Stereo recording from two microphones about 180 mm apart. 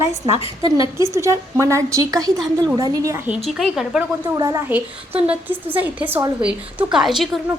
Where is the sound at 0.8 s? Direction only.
15° right (ahead or behind).